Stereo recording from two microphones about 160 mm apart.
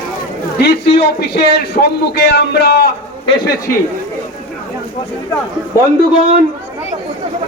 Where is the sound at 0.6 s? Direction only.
90° left.